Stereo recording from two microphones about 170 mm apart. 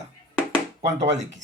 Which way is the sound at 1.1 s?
45° right (ahead or behind).